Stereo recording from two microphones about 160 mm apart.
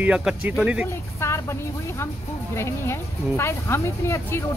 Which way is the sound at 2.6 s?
15° left (ahead or behind).